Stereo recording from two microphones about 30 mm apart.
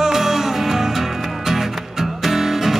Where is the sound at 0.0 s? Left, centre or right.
Centre.